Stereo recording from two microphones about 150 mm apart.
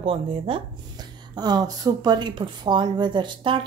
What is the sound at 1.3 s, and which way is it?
A woman's voice, 25° right (ahead or behind).